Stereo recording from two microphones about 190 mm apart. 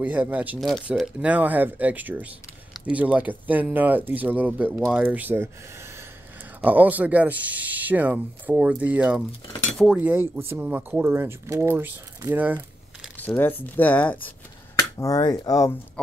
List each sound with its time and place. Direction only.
0.0 s speech: 10° right (ahead or behind)
6.6 s speech: 10° right (ahead or behind)
13.2 s speech: 10° left (ahead or behind)